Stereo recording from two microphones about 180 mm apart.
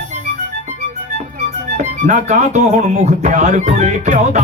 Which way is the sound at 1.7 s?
40° right (ahead or behind).